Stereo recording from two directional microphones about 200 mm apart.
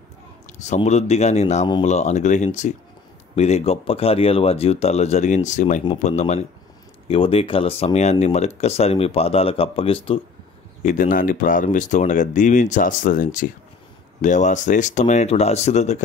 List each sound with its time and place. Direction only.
0.6 s speech: 35° left (ahead or behind)
10.8 s speech: 40° left (ahead or behind)